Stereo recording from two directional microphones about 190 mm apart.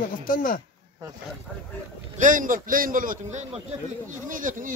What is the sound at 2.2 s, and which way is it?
A man's voice, 45° right (ahead or behind).